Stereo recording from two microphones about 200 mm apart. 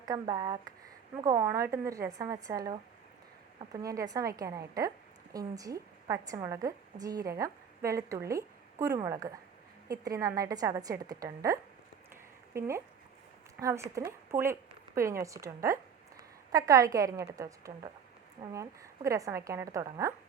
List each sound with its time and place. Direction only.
0.0 s a woman's voice: 15° right (ahead or behind)